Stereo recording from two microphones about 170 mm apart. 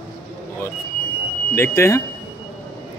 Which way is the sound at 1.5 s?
15° left (ahead or behind).